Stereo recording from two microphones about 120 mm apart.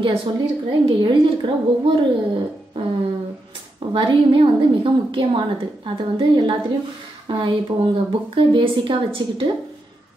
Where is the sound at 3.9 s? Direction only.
45° right (ahead or behind).